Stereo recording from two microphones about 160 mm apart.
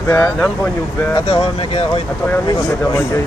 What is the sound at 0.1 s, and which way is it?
Speech, 15° left (ahead or behind).